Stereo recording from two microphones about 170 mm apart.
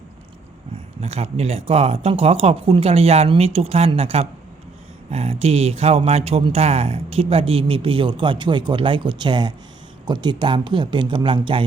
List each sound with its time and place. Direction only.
1.0 s speech: 40° right (ahead or behind)